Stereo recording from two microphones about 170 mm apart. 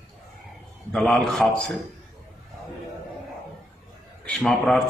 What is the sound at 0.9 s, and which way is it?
Speech, 5° left (ahead or behind).